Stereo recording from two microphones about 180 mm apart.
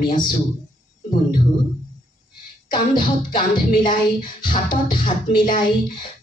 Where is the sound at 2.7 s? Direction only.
25° left (ahead or behind).